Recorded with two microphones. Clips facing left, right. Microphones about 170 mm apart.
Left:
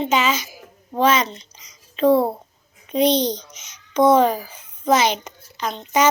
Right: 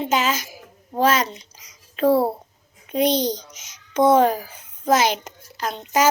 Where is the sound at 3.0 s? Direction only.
50° right (ahead or behind).